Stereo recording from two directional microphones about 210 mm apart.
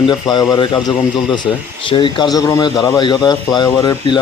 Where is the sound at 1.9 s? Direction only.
25° left (ahead or behind).